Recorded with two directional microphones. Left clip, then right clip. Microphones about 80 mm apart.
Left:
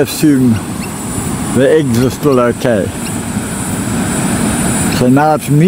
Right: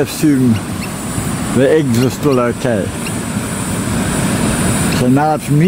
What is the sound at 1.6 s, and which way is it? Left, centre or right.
Speech, centre.